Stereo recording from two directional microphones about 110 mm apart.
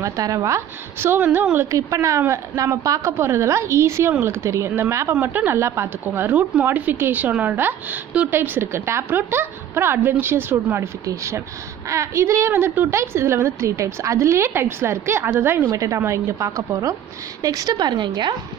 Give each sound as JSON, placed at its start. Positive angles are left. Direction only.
{"t": 0.0, "sound": "a woman's voice", "side_deg": -30}